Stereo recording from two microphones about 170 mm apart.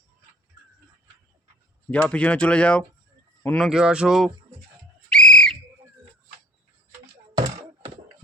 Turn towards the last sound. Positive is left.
turn(degrees=-45)  # may be behind; listen again after turning